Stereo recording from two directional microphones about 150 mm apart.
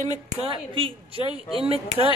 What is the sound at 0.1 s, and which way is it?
Speech, 40° right (ahead or behind).